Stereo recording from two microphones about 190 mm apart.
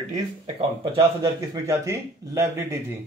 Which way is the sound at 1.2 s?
15° right (ahead or behind).